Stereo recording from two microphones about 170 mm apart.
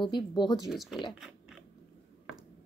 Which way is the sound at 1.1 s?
Centre (ahead or behind).